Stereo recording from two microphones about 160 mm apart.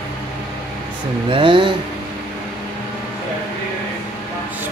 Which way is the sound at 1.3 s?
30° right (ahead or behind).